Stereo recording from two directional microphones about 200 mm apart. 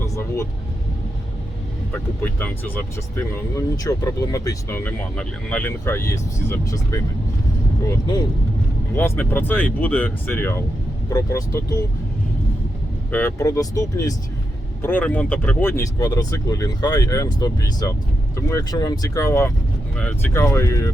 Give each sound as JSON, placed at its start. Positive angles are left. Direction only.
{"t": 1.9, "sound": "speech", "side_deg": 10}
{"t": 9.0, "sound": "speech", "side_deg": 10}
{"t": 13.1, "sound": "speech", "side_deg": 10}